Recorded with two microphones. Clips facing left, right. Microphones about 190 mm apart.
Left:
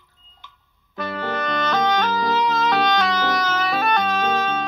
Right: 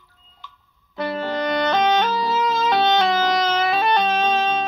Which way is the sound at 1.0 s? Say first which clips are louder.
Right 3 dB; 25° right (ahead or behind).